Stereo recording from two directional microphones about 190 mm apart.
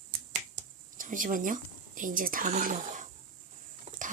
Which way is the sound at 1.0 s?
45° right (ahead or behind).